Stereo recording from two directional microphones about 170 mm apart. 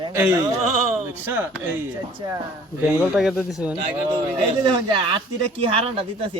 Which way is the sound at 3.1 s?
Centre (ahead or behind).